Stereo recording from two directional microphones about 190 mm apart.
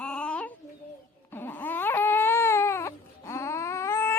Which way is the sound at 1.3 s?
10° left (ahead or behind).